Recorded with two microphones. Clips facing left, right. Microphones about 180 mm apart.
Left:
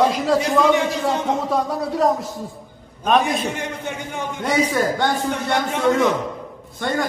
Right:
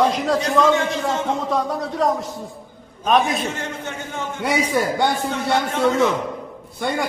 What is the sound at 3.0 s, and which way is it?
Speech, centre (ahead or behind).